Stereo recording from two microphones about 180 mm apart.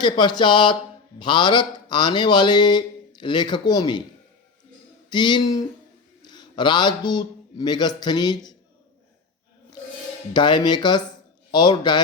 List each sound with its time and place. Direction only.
0.0 s speech: 25° left (ahead or behind)
5.0 s a man's voice: 25° left (ahead or behind)
10.3 s speech: 25° left (ahead or behind)